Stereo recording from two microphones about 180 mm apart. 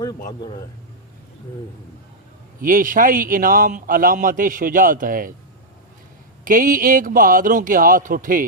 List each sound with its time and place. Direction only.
0.3 s a man's voice: 25° left (ahead or behind)
2.6 s a man's voice: 50° right (ahead or behind)
6.4 s a man's voice: 50° right (ahead or behind)